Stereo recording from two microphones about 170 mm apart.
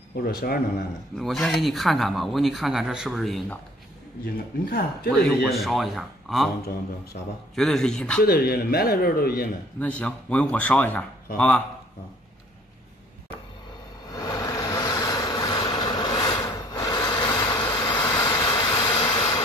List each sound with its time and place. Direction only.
0.1 s speech: 65° left (ahead or behind)
1.1 s speech: centre (ahead or behind)
4.6 s speech: 60° left (ahead or behind)
5.4 s speech: centre (ahead or behind)
7.5 s speech: centre (ahead or behind)
8.2 s speech: 65° left (ahead or behind)
9.8 s a man's voice: 10° left (ahead or behind)
14.1 s vehicle: 20° left (ahead or behind)